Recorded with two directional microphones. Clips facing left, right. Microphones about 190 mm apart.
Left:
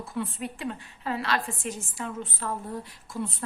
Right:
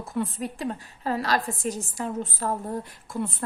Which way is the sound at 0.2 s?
40° right (ahead or behind).